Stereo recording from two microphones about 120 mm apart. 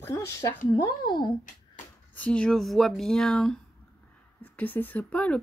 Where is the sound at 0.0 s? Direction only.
25° left (ahead or behind).